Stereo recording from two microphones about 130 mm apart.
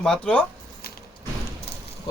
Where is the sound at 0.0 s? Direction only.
10° left (ahead or behind).